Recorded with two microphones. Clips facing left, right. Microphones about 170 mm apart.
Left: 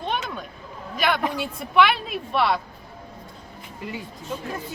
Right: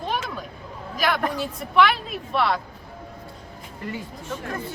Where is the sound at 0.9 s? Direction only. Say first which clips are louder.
Even; centre (ahead or behind).